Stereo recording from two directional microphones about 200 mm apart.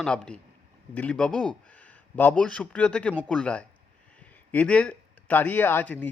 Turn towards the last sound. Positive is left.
turn(degrees=10)  # may be behind; listen again after turning